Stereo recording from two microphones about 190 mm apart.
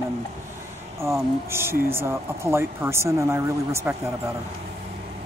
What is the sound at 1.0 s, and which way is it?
Speech, 15° right (ahead or behind).